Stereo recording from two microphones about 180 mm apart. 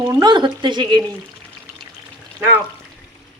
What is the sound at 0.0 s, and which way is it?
Speech, 20° right (ahead or behind).